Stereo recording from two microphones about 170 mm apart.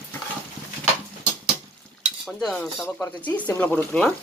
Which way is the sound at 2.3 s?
Centre (ahead or behind).